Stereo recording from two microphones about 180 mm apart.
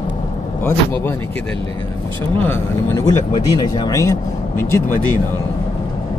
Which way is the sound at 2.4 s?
15° left (ahead or behind).